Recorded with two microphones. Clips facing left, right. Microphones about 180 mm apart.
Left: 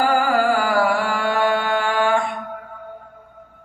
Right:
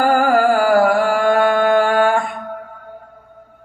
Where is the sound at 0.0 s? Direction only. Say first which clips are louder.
Right 4 dB; 50° right (ahead or behind).